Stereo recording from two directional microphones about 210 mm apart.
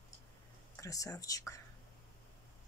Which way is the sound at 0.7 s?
15° left (ahead or behind).